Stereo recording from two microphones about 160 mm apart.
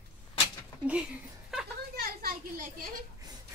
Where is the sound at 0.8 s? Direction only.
5° right (ahead or behind).